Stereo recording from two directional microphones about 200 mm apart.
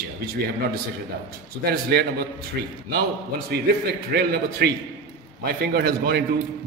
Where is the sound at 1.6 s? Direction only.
50° right (ahead or behind).